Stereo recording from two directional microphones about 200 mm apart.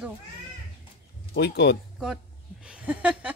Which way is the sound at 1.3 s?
55° left (ahead or behind).